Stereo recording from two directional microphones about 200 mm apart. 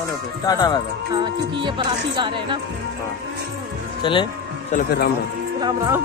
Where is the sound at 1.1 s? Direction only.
25° right (ahead or behind).